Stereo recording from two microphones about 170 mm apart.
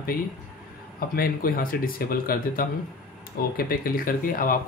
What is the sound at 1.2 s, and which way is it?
Speech, 60° left (ahead or behind).